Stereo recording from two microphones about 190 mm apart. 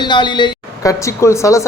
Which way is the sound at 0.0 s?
25° left (ahead or behind).